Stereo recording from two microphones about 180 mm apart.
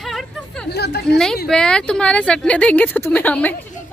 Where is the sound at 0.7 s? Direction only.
65° left (ahead or behind).